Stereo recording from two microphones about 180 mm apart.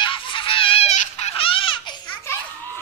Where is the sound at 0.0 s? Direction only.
30° left (ahead or behind).